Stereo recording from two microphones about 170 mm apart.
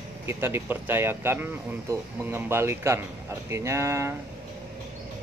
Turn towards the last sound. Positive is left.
turn(degrees=-15)  # may be behind; listen again after turning